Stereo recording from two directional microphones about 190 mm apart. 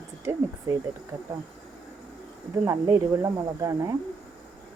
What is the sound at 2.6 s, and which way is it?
Speech, 15° right (ahead or behind).